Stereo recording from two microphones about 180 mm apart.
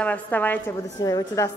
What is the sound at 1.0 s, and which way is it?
Speech, 20° left (ahead or behind).